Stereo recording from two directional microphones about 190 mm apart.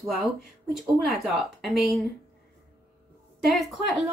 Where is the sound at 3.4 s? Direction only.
Centre (ahead or behind).